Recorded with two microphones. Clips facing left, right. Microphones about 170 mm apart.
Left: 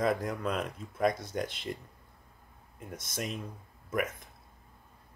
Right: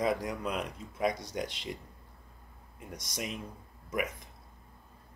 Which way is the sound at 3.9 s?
10° right (ahead or behind).